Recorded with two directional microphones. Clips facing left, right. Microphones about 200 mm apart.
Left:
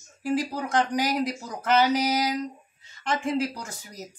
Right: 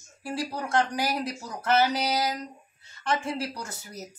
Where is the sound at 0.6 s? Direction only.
15° left (ahead or behind).